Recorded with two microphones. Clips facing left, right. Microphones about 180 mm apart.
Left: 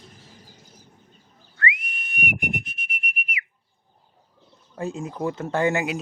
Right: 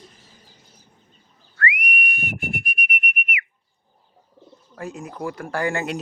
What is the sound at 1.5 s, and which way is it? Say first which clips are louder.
Whistle: right 3 dB; 25° left (ahead or behind).